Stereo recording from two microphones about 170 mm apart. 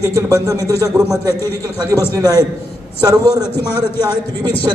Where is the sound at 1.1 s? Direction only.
15° left (ahead or behind).